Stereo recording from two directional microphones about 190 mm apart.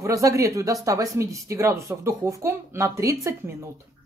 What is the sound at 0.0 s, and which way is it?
Speech, 15° right (ahead or behind).